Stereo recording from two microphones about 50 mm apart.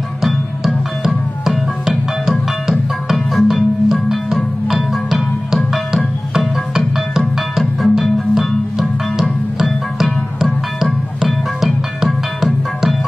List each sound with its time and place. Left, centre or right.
0.2 s music: centre
1.9 s music: centre
6.7 s music: centre
10.4 s music: centre